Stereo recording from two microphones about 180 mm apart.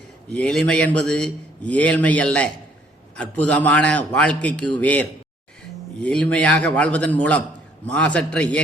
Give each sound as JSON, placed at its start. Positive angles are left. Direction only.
{"t": 0.3, "sound": "a man's voice", "side_deg": 5}